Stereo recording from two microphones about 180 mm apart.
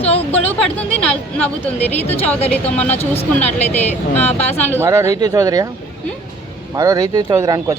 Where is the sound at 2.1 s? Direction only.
35° left (ahead or behind).